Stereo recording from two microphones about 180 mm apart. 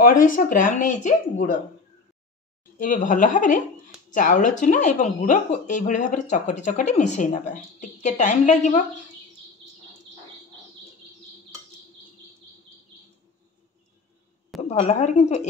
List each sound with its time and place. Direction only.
0.0 s speech: 50° left (ahead or behind)
2.8 s speech: 45° left (ahead or behind)
14.6 s speech: 35° left (ahead or behind)